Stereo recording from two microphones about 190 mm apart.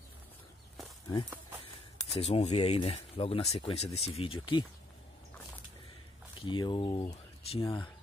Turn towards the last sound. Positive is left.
turn(degrees=30)  # may be behind; listen again after turning